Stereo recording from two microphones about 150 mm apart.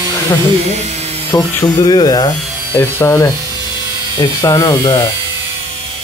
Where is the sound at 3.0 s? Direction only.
15° left (ahead or behind).